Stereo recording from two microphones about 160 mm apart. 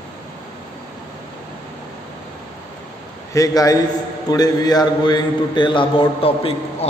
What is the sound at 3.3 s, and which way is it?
A man's voice, 20° left (ahead or behind).